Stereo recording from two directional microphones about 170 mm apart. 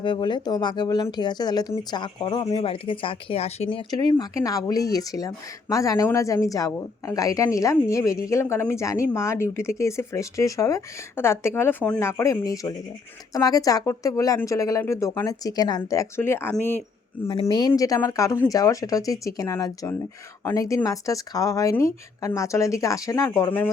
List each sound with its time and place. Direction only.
0.0 s speech: 30° left (ahead or behind); by 16.8 s 10° left (ahead or behind)
17.4 s speech: 25° left (ahead or behind)